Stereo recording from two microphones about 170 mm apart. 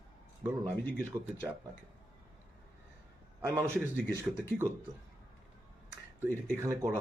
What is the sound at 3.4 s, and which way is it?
Speech, 15° right (ahead or behind).